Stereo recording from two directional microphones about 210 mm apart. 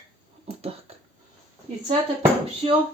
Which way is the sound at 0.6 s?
30° right (ahead or behind).